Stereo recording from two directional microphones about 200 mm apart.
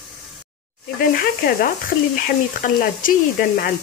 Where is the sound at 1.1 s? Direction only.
45° left (ahead or behind).